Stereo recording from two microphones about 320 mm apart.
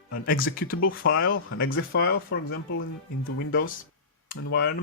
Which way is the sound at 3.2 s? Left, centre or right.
Left.